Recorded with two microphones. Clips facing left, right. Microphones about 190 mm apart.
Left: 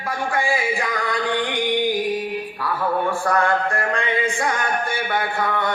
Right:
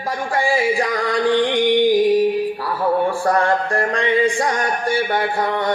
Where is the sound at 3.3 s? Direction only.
30° right (ahead or behind).